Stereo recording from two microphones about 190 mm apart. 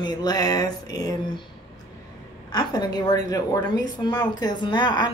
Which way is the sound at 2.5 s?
20° left (ahead or behind).